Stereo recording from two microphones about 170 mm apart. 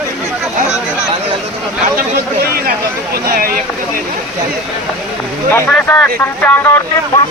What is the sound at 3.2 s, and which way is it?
Speech, 55° right (ahead or behind).